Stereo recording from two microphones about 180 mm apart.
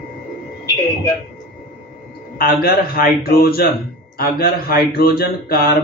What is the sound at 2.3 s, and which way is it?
Speech, 55° left (ahead or behind).